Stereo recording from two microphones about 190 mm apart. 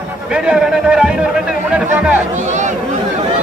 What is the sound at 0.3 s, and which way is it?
Speech, 5° right (ahead or behind).